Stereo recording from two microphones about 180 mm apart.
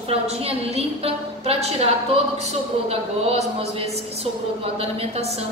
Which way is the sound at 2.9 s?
35° right (ahead or behind).